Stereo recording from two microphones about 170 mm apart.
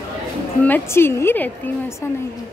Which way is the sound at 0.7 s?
15° left (ahead or behind).